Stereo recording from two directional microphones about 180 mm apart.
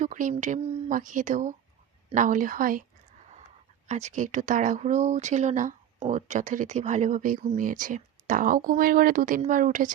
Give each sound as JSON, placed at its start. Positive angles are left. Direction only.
{"t": 0.0, "sound": "speech", "side_deg": -45}
{"t": 3.8, "sound": "speech", "side_deg": -40}